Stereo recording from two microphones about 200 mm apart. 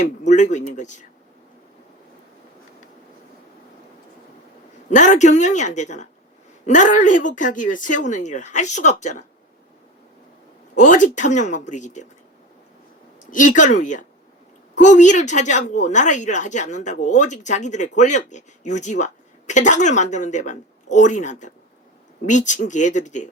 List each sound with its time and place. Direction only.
0.3 s speech: 35° left (ahead or behind)
4.9 s speech: 40° left (ahead or behind)
10.8 s speech: 40° left (ahead or behind)
13.3 s speech: 40° left (ahead or behind)